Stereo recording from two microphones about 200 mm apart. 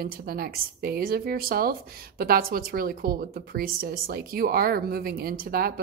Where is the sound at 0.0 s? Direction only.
50° right (ahead or behind).